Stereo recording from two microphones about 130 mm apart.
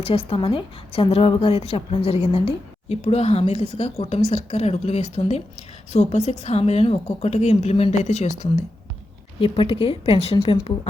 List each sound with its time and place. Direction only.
0.0 s a woman's voice: 50° left (ahead or behind)
9.4 s speech: 45° left (ahead or behind)
10.3 s a woman's voice: 35° left (ahead or behind)